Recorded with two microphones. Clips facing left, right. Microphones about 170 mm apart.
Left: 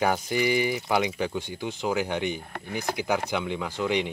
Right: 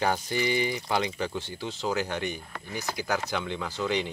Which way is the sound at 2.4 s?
55° left (ahead or behind).